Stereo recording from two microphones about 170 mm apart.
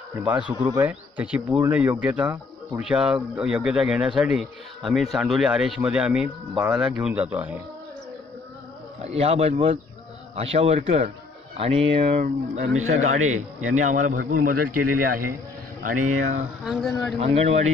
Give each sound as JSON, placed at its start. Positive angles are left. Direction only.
{"t": 0.6, "sound": "speech", "side_deg": -15}
{"t": 9.0, "sound": "speech", "side_deg": -35}
{"t": 16.6, "sound": "speech", "side_deg": 0}
{"t": 17.2, "sound": "speech", "side_deg": -35}